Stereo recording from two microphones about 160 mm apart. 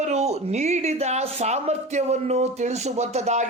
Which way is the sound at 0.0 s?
45° right (ahead or behind).